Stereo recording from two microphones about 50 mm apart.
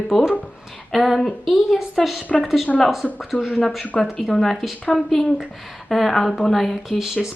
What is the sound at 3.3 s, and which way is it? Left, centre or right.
Speech, right.